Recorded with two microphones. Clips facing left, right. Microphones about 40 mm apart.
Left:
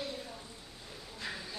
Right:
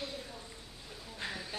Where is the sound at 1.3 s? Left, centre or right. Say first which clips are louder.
Right 1 dB; right.